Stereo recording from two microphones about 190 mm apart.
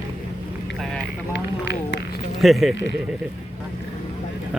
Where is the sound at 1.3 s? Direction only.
60° left (ahead or behind).